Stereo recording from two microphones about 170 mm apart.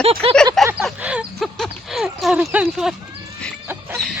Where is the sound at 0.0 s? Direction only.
35° right (ahead or behind).